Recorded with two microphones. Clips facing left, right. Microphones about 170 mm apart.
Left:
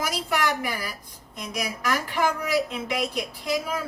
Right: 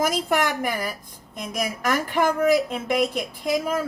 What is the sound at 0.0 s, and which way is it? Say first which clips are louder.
Speech: right 4 dB; 50° right (ahead or behind).